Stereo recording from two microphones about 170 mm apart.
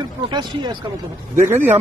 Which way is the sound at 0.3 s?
25° right (ahead or behind).